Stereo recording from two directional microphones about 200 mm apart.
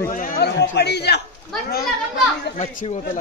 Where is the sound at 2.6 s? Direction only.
35° left (ahead or behind).